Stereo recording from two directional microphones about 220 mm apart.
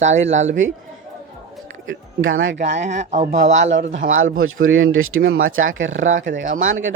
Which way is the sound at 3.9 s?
65° right (ahead or behind).